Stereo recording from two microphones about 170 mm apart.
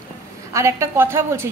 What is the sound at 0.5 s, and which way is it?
Speech, 15° right (ahead or behind).